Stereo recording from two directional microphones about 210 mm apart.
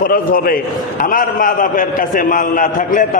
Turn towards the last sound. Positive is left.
turn(degrees=40)  # may be behind; listen again after turning